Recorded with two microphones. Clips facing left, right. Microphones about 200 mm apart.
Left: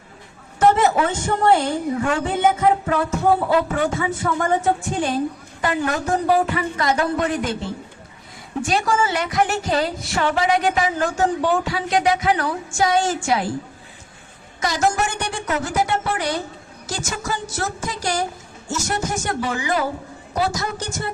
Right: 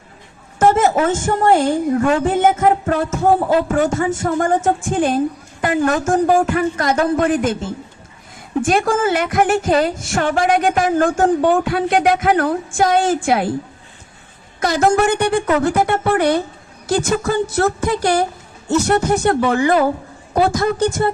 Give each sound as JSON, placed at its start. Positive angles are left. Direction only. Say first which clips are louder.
{"t": 0.6, "sound": "a woman's voice", "louder": "right 3 dB", "side_deg": -45}
{"t": 8.6, "sound": "a woman's voice", "louder": "right 4 dB", "side_deg": -50}
{"t": 14.6, "sound": "a woman's voice", "louder": "right 6 dB", "side_deg": -60}